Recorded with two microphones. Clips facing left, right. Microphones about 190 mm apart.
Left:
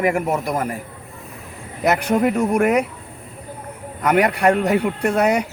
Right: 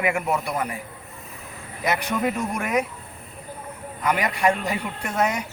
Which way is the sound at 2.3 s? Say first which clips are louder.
Left 8 dB; 65° left (ahead or behind).